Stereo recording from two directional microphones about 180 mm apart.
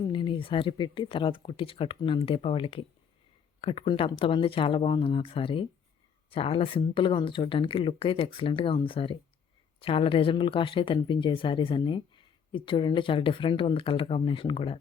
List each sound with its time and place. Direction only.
0.0 s speech: 25° left (ahead or behind)